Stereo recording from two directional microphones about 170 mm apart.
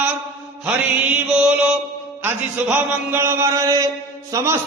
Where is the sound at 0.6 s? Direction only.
10° right (ahead or behind).